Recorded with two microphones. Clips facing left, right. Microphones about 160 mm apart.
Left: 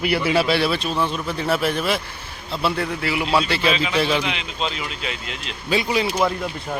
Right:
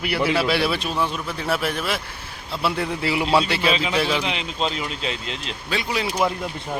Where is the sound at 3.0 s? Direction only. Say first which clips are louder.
Right 2 dB; 25° right (ahead or behind).